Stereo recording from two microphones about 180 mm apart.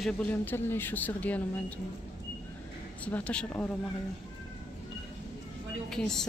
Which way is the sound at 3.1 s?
10° left (ahead or behind).